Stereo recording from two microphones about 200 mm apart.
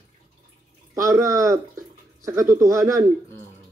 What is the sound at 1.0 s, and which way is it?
Speech, 15° right (ahead or behind).